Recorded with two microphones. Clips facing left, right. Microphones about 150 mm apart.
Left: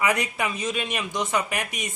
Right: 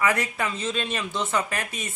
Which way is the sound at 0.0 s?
15° left (ahead or behind).